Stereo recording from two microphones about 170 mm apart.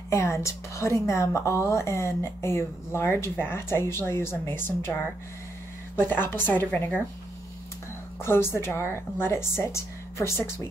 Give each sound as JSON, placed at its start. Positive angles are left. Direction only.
{"t": 0.1, "sound": "a woman's voice", "side_deg": 15}
{"t": 5.9, "sound": "a woman's voice", "side_deg": 10}
{"t": 8.2, "sound": "a woman's voice", "side_deg": 15}